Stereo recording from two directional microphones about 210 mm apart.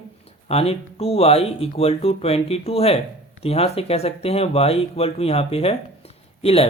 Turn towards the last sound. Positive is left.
turn(degrees=30)  # may be behind; listen again after turning